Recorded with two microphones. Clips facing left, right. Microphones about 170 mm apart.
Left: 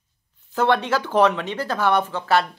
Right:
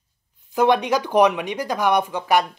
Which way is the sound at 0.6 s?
15° right (ahead or behind).